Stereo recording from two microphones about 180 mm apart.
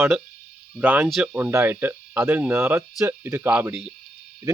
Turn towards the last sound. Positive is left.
turn(degrees=-20)  # may be behind; listen again after turning